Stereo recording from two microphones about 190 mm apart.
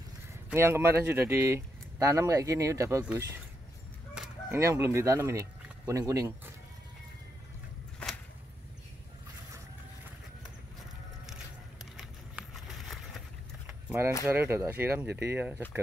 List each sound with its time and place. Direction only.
0.5 s speech: 15° right (ahead or behind)
4.5 s speech: 15° right (ahead or behind)
11.8 s a sound: 5° right (ahead or behind)
14.2 s speech: 10° right (ahead or behind)